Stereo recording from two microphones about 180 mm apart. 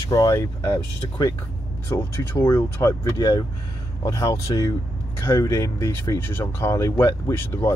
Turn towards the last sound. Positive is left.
turn(degrees=10)  # may be behind; listen again after turning